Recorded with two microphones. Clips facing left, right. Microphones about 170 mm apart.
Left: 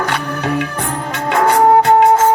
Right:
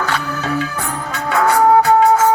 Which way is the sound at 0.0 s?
15° left (ahead or behind).